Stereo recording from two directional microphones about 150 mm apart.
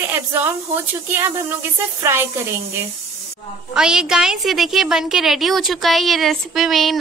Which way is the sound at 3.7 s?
5° right (ahead or behind).